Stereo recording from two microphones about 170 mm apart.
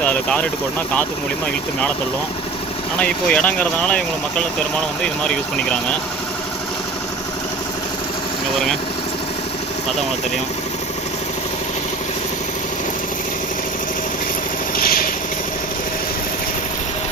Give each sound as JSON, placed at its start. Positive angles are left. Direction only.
{"t": 0.0, "sound": "speech", "side_deg": 10}
{"t": 3.0, "sound": "speech", "side_deg": 5}
{"t": 14.8, "sound": "vehicle", "side_deg": 60}